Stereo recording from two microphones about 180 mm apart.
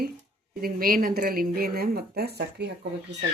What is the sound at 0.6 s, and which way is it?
Speech, 55° right (ahead or behind).